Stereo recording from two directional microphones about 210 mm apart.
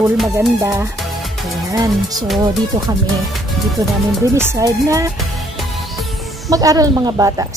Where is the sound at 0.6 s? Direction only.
15° right (ahead or behind).